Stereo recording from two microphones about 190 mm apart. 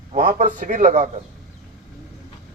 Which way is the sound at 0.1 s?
40° right (ahead or behind).